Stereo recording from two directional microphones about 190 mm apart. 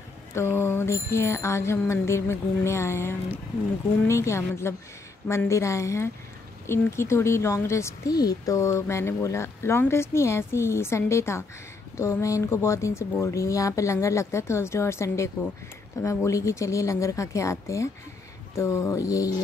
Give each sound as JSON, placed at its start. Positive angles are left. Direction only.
{"t": 0.3, "sound": "a woman's voice", "side_deg": 15}